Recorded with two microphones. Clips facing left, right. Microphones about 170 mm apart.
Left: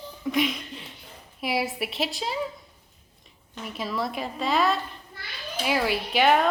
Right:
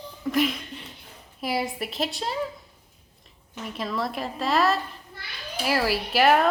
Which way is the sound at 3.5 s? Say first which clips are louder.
Right 1 dB; centre (ahead or behind).